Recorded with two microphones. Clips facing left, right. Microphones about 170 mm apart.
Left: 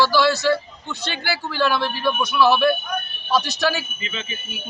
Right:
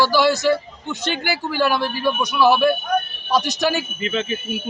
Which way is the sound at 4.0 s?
60° right (ahead or behind).